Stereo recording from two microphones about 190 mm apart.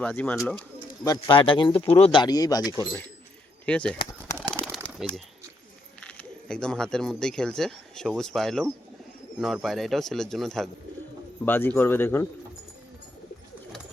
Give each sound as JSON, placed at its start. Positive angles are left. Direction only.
{"t": 0.0, "sound": "a man's voice", "side_deg": 10}
{"t": 1.0, "sound": "speech", "side_deg": 20}
{"t": 3.7, "sound": "speech", "side_deg": 5}
{"t": 4.5, "sound": "bird", "side_deg": 5}
{"t": 6.0, "sound": "a man's voice", "side_deg": 5}